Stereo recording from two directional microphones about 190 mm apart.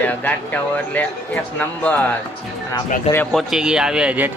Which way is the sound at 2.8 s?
40° left (ahead or behind).